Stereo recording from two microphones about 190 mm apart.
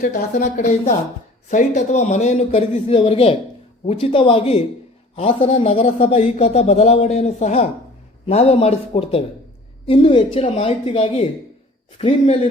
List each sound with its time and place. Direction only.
0.0 s a man's voice: 50° left (ahead or behind); by 12.5 s 30° left (ahead or behind)